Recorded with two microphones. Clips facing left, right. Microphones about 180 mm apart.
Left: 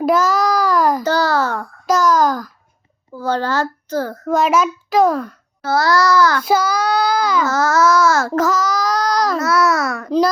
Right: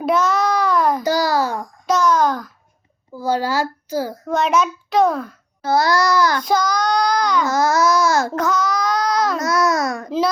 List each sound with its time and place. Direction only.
0.0 s child singing: centre (ahead or behind)
1.0 s a sound: 10° right (ahead or behind)
1.9 s a sound: centre (ahead or behind)
3.2 s a child's voice: 10° right (ahead or behind)
4.3 s a child's voice: centre (ahead or behind)
5.6 s a child's voice: 15° right (ahead or behind)
6.4 s a child's voice: 5° left (ahead or behind)
7.4 s a child's voice: 15° right (ahead or behind)
8.4 s child singing: centre (ahead or behind)
9.4 s baby cry: 20° right (ahead or behind)